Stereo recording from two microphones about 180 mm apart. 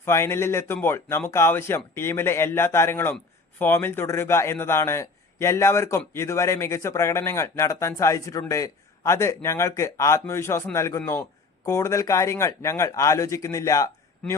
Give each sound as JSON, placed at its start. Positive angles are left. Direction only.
{"t": 0.0, "sound": "a man's voice", "side_deg": 15}